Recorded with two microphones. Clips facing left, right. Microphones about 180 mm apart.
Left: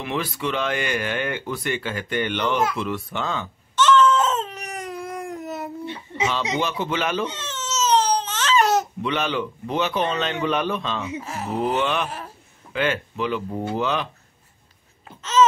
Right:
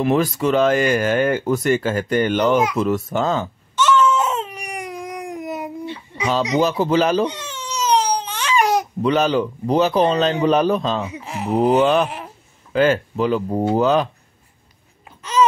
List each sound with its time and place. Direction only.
0.0 s speech: 45° right (ahead or behind)
3.7 s baby cry: 10° right (ahead or behind)
6.5 s a man's voice: 40° right (ahead or behind)
7.2 s crying: 15° right (ahead or behind)
9.0 s a man's voice: 40° right (ahead or behind)
11.2 s speech: 15° right (ahead or behind)
11.5 s a man's voice: 40° right (ahead or behind)
15.4 s a sound: 10° right (ahead or behind)